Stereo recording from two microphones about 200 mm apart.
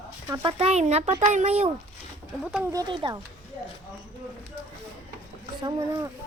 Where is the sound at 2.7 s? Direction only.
20° right (ahead or behind).